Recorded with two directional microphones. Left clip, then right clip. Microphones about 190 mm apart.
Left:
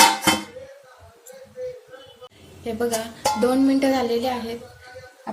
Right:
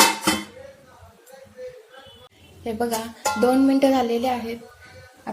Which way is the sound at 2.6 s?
15° right (ahead or behind).